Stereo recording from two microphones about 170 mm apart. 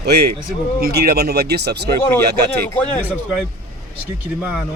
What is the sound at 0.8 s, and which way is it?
Speech, 70° right (ahead or behind).